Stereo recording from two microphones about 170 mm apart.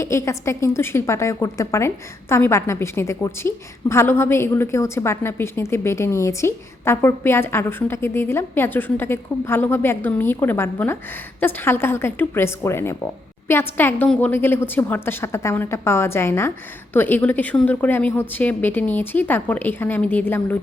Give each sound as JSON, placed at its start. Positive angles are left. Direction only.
{"t": 0.0, "sound": "a woman's voice", "side_deg": 15}